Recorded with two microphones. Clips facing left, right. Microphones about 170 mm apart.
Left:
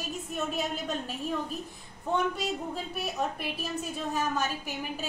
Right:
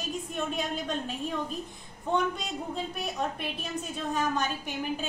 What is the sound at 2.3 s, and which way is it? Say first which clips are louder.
A woman's voice: left 1 dB; 5° left (ahead or behind).